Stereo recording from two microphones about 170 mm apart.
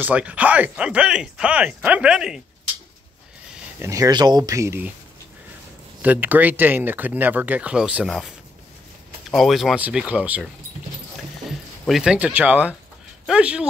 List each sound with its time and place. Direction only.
0.0 s speech: 10° right (ahead or behind)
3.8 s speech: 20° right (ahead or behind)
6.0 s speech: 10° right (ahead or behind)